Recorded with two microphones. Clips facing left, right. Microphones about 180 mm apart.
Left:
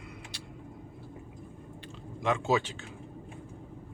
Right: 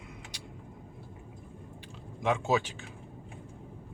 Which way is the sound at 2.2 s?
10° right (ahead or behind).